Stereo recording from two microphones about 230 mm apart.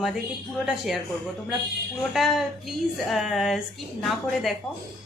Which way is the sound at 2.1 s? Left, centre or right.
Centre.